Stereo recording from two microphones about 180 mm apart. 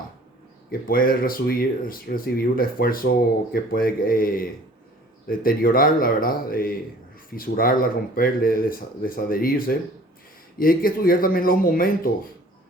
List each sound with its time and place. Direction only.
0.7 s speech: 55° left (ahead or behind)